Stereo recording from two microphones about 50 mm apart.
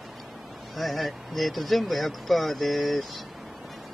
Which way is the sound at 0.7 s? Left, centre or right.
Centre.